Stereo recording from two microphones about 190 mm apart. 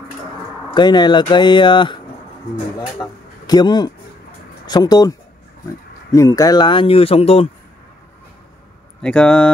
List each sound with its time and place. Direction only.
0.7 s speech: 25° left (ahead or behind)
3.0 s speech: 5° left (ahead or behind)
3.4 s a man's voice: 20° left (ahead or behind)
6.1 s speech: 20° left (ahead or behind)
9.0 s speech: 5° left (ahead or behind)